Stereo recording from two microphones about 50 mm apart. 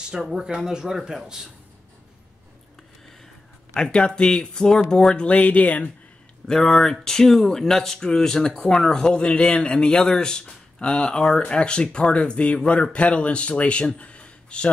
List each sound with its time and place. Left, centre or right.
0.1 s speech: centre
3.7 s speech: centre
5.2 s speech: left
6.4 s speech: centre